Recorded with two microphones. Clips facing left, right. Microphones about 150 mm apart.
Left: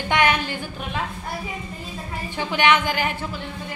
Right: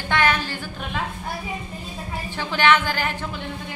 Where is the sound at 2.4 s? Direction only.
15° left (ahead or behind).